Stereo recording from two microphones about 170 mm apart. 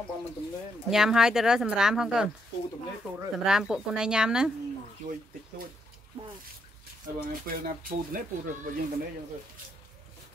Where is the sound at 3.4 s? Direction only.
5° right (ahead or behind).